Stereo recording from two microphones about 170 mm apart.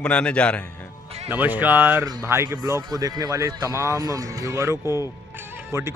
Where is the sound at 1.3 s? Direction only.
10° right (ahead or behind).